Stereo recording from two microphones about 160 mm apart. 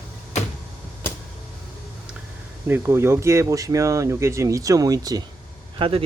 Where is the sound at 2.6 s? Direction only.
15° right (ahead or behind).